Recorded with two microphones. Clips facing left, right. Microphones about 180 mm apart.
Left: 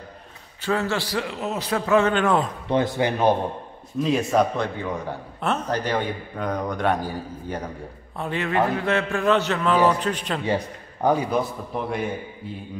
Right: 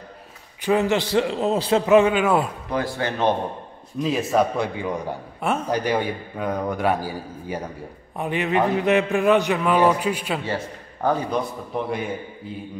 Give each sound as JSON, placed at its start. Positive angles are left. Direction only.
{"t": 0.6, "sound": "a man's voice", "side_deg": -15}
{"t": 1.9, "sound": "speech", "side_deg": -15}
{"t": 2.7, "sound": "a man's voice", "side_deg": 20}
{"t": 4.0, "sound": "a man's voice", "side_deg": 0}
{"t": 10.4, "sound": "a man's voice", "side_deg": 15}
{"t": 11.7, "sound": "a man's voice", "side_deg": 0}